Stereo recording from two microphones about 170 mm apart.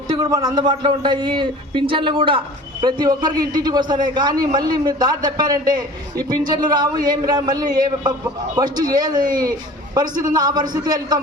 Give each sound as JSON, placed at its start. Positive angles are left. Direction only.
{"t": 0.3, "sound": "a man's voice", "side_deg": -20}